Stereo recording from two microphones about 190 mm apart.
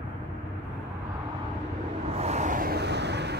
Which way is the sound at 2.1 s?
35° right (ahead or behind).